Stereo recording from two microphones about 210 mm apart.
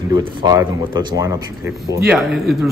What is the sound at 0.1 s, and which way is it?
Speech, 20° right (ahead or behind).